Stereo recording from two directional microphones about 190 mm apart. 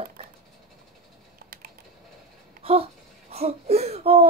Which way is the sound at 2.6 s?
30° right (ahead or behind).